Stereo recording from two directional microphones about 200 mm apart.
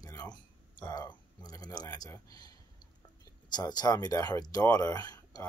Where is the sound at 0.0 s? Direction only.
20° left (ahead or behind).